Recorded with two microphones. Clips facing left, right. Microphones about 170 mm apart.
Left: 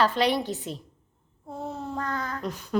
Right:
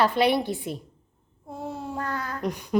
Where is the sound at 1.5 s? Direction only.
10° right (ahead or behind).